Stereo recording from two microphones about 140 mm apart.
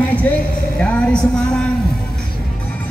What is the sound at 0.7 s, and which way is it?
Speech, 5° left (ahead or behind).